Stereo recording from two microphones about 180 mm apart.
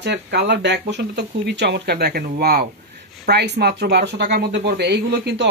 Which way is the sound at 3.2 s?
70° right (ahead or behind).